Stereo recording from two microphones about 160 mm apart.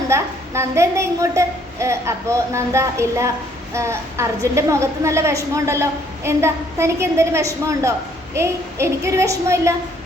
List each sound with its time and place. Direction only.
0.1 s a woman's voice: 15° right (ahead or behind)